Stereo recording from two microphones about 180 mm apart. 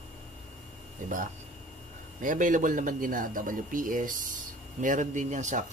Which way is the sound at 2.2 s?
45° right (ahead or behind).